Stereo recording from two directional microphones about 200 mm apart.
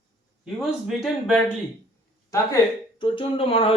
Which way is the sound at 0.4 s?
Centre (ahead or behind).